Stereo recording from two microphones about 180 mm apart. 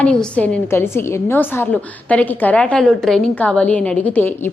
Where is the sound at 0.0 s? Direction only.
5° left (ahead or behind).